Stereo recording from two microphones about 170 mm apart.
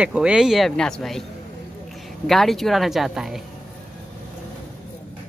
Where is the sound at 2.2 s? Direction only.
Centre (ahead or behind).